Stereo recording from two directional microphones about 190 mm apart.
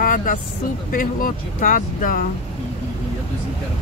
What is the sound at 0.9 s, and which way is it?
Speech, 45° left (ahead or behind).